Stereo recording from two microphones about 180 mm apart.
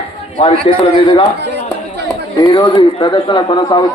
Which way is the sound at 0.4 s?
35° left (ahead or behind).